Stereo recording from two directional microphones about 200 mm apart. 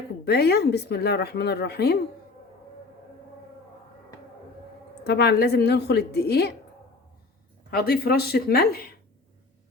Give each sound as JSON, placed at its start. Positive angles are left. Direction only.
{"t": 0.3, "sound": "speech", "side_deg": 55}
{"t": 5.0, "sound": "a woman's voice", "side_deg": 55}
{"t": 7.7, "sound": "a woman's voice", "side_deg": 50}